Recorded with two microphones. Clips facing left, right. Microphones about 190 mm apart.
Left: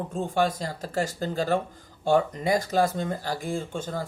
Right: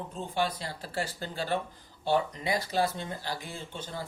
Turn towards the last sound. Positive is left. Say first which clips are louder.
# left 9 dB
turn(degrees=45)  # may be behind; listen again after turning